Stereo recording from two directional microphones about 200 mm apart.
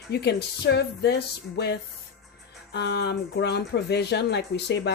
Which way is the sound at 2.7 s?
55° left (ahead or behind).